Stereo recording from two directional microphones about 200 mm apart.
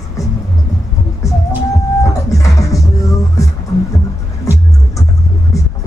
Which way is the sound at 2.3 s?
15° left (ahead or behind).